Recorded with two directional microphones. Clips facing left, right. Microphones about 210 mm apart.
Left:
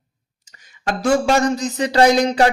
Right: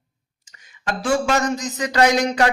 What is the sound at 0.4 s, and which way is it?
A man's voice, 40° left (ahead or behind).